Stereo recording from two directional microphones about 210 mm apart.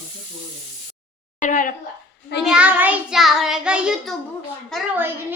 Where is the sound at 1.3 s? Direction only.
35° left (ahead or behind).